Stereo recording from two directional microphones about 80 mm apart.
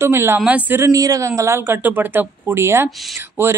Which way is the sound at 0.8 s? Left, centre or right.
Right.